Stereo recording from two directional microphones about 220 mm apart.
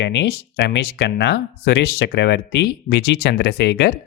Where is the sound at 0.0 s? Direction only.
55° left (ahead or behind).